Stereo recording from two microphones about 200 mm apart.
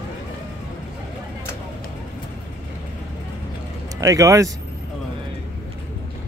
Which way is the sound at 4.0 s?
15° right (ahead or behind).